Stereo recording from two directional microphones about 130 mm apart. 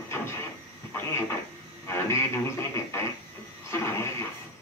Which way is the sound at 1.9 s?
20° left (ahead or behind).